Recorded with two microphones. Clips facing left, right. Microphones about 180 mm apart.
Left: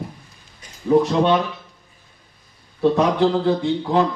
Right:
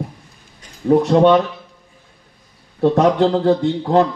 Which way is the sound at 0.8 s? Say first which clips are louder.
Right 4 dB; 55° right (ahead or behind).